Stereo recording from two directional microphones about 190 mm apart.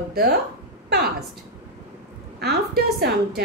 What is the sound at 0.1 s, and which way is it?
Speech, 55° right (ahead or behind).